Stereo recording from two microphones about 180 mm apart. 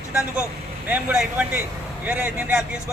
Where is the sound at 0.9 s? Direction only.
10° right (ahead or behind).